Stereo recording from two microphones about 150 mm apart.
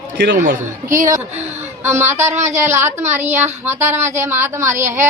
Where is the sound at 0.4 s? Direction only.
60° right (ahead or behind).